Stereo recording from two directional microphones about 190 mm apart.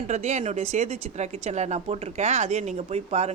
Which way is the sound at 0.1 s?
35° right (ahead or behind).